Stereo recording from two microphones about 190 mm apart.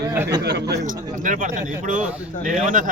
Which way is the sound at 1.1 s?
45° right (ahead or behind).